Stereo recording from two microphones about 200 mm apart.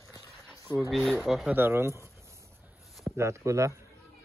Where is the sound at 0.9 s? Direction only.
Centre (ahead or behind).